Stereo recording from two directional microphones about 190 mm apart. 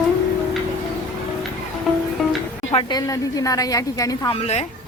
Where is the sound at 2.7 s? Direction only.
20° left (ahead or behind).